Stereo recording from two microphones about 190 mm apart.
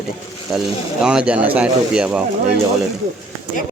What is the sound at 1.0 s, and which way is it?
Speech, 5° right (ahead or behind).